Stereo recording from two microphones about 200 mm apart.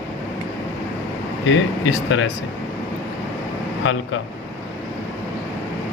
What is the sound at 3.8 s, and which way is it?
Speech, 75° left (ahead or behind).